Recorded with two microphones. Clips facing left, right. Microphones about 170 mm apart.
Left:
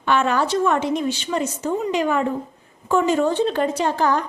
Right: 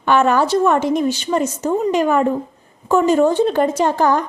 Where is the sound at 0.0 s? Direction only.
45° right (ahead or behind).